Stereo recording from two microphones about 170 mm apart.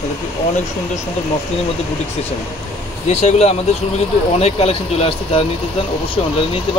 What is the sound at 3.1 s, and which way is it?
Speech, 40° left (ahead or behind).